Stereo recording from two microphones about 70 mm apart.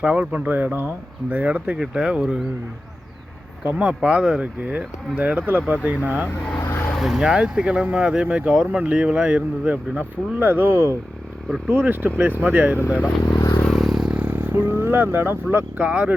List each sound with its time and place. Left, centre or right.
0.0 s speech: centre
3.8 s speech: centre
6.6 s vehicle: left
6.9 s speech: centre; by 10.7 s right
11.7 s speech: right
13.2 s vehicle: left
13.7 s vehicle: centre
14.1 s speech: right